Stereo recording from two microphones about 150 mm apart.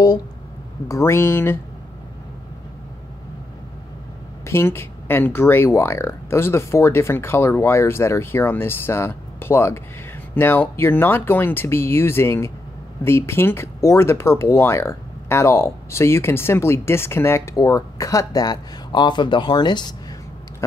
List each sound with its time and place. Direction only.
0.8 s speech: 20° left (ahead or behind)
4.5 s speech: 15° left (ahead or behind)